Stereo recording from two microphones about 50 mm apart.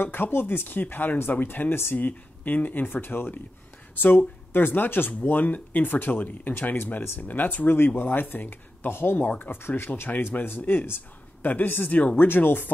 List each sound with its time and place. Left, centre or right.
0.0 s speech: left
10.3 s speech: left
12.3 s speech: left